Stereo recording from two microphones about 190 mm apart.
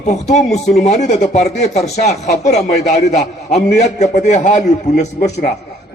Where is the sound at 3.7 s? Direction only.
35° left (ahead or behind).